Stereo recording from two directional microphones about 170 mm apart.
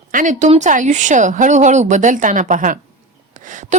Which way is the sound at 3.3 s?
50° right (ahead or behind).